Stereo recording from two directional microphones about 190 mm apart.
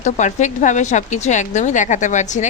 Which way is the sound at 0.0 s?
40° left (ahead or behind).